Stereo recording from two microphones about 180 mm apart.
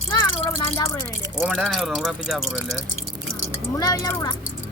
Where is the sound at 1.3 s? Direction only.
5° right (ahead or behind).